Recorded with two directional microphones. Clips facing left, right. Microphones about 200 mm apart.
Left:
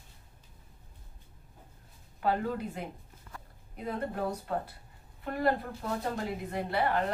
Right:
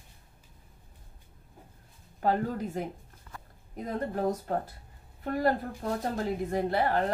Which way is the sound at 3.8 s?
45° right (ahead or behind).